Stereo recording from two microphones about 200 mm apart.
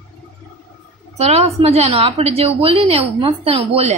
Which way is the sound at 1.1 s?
30° right (ahead or behind).